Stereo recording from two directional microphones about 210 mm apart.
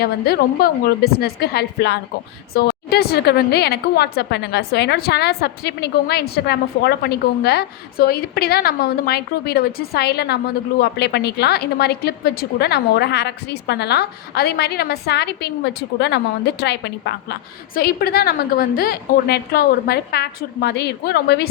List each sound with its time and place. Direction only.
0.0 s a woman's voice: 50° left (ahead or behind)